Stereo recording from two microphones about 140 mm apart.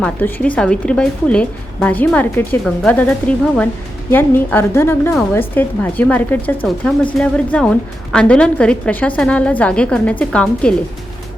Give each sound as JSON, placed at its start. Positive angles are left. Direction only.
{"t": 0.0, "sound": "a woman's voice", "side_deg": 15}